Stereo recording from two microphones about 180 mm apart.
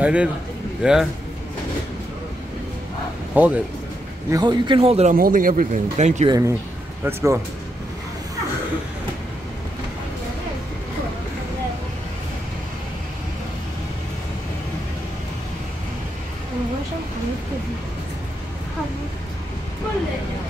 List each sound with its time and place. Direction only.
0.0 s a man's voice: 5° right (ahead or behind)
3.3 s speech: 10° right (ahead or behind)
4.3 s speech: 25° right (ahead or behind)
5.1 s speech: 50° right (ahead or behind)
6.2 s speech: 20° right (ahead or behind)